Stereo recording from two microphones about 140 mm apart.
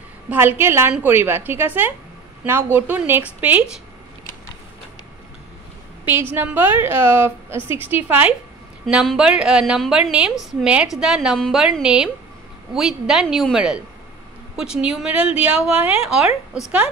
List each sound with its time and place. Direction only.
0.3 s a woman's voice: 15° right (ahead or behind)
6.3 s a woman's voice: 15° right (ahead or behind)